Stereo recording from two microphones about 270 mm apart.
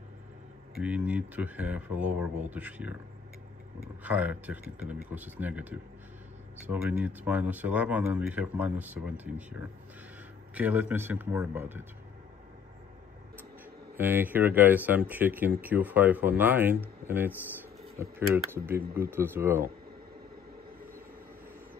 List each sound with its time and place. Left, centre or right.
0.7 s speech: centre
4.0 s speech: centre
13.9 s speech: centre
17.9 s speech: centre